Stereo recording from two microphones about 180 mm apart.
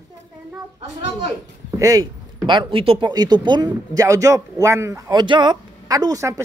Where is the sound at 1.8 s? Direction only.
20° right (ahead or behind).